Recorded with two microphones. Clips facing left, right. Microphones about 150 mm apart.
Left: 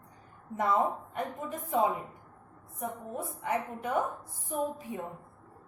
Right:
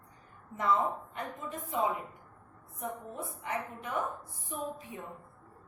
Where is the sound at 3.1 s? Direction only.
45° left (ahead or behind).